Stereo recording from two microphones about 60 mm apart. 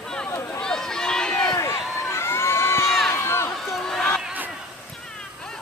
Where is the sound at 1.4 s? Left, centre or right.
Left.